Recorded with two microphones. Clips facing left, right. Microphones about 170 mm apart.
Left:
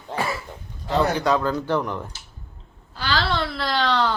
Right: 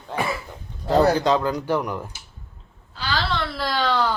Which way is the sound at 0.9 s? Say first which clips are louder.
Right 4 dB; 35° right (ahead or behind).